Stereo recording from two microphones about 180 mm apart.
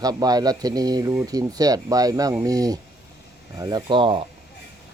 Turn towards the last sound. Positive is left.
turn(degrees=-30)  # may be behind; listen again after turning